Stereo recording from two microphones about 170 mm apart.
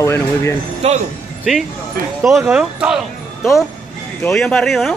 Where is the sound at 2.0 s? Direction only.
60° right (ahead or behind).